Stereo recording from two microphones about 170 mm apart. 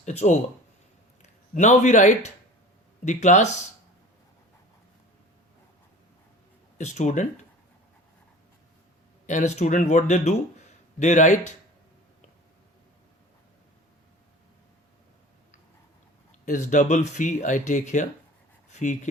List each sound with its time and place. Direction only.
0.0 s speech: 40° left (ahead or behind)
6.7 s speech: 45° left (ahead or behind)
9.2 s speech: 45° left (ahead or behind)
16.5 s speech: 45° left (ahead or behind)